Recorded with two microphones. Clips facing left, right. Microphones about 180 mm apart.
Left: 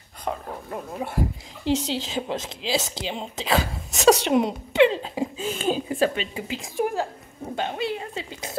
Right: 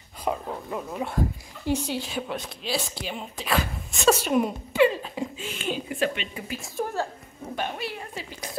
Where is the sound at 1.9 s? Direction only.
90° left.